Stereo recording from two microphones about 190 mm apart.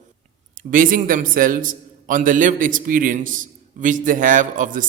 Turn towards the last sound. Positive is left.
turn(degrees=-45)  # may be behind; listen again after turning